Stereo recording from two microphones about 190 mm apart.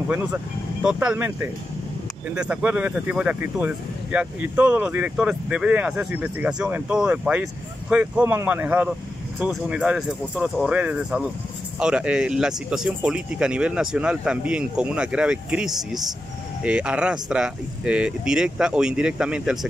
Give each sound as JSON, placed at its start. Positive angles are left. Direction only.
{"t": 0.8, "sound": "speech", "side_deg": -5}